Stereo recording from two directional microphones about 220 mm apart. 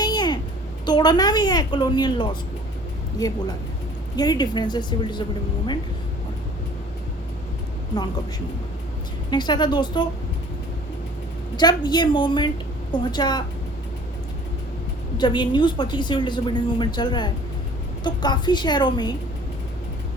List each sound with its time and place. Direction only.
0.0 s a sound: 20° left (ahead or behind)
0.9 s a woman's voice: 20° left (ahead or behind)
9.3 s a woman's voice: 20° left (ahead or behind)
11.5 s a woman's voice: 20° left (ahead or behind)
15.2 s a woman's voice: 20° left (ahead or behind)